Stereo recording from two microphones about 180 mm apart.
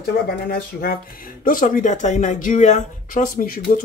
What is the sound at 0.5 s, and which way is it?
Speech, 55° left (ahead or behind).